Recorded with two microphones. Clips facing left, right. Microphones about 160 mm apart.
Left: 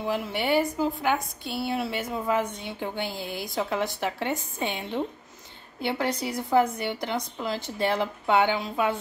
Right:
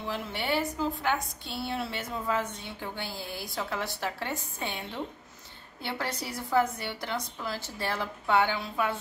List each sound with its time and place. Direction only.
0.0 s a woman's voice: 10° left (ahead or behind)